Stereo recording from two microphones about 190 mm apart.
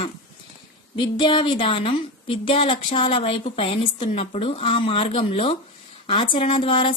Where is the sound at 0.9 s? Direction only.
25° left (ahead or behind).